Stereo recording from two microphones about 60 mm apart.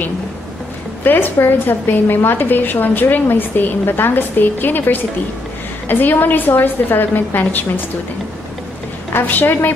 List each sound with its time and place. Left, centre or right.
1.0 s a woman's voice: left
9.1 s a woman's voice: left